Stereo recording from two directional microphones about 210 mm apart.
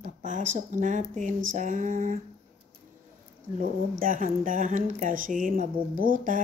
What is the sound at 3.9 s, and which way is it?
Speech, 40° right (ahead or behind).